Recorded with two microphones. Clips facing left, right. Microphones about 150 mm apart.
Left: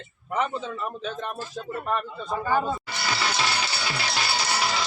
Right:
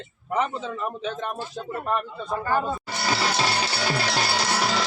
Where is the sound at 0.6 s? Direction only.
20° right (ahead or behind).